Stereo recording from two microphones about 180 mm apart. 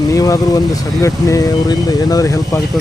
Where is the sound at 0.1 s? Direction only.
20° left (ahead or behind).